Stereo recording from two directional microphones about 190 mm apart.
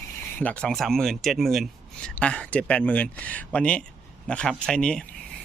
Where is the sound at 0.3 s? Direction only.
5° left (ahead or behind).